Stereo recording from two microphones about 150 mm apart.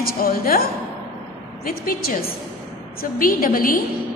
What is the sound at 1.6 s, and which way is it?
A woman's voice, 75° left (ahead or behind).